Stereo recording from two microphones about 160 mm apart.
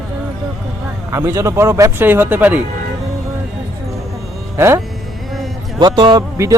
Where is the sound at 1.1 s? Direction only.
20° right (ahead or behind).